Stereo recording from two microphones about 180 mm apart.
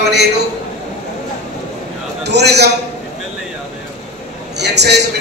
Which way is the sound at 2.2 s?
65° right (ahead or behind).